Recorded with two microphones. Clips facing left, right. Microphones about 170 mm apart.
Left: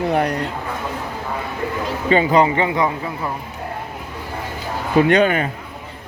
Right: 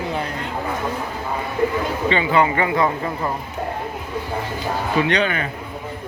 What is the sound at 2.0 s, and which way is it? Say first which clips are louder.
Speech: left 4 dB; 40° left (ahead or behind).